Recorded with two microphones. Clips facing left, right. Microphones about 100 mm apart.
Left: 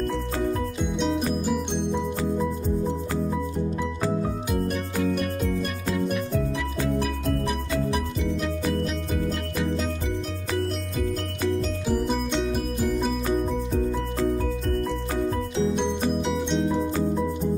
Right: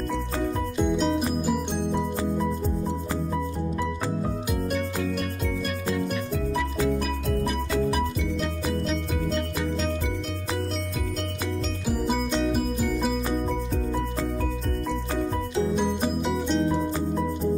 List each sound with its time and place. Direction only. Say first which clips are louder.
0.9 s music: right 1 dB; centre (ahead or behind)
6.0 s music: left 2 dB; centre (ahead or behind)
11.9 s music: even; centre (ahead or behind)
16.2 s music: even; centre (ahead or behind)